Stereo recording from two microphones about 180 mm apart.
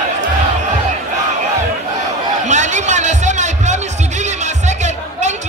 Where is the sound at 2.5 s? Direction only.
40° right (ahead or behind).